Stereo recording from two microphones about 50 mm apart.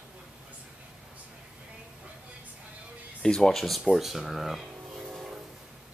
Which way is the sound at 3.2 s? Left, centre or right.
Centre.